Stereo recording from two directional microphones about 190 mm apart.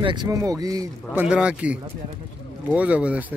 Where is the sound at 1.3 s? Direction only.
5° right (ahead or behind).